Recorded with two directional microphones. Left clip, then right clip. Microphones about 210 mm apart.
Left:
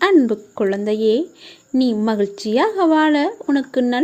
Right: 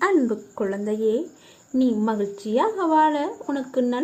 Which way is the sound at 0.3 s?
35° left (ahead or behind).